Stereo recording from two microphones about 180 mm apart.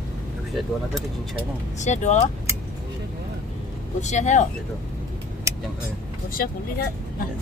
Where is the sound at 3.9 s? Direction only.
40° left (ahead or behind).